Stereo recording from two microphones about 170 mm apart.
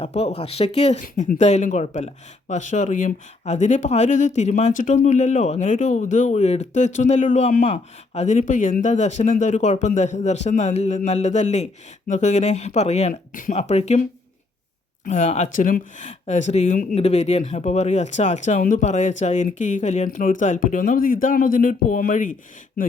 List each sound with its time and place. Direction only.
0.0 s speech: 40° left (ahead or behind)
1.0 s speech: 50° left (ahead or behind)
15.0 s speech: 45° left (ahead or behind)
16.9 s speech: 35° left (ahead or behind)